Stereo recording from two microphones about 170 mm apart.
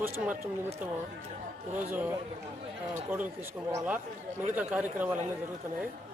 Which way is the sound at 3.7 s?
10° right (ahead or behind).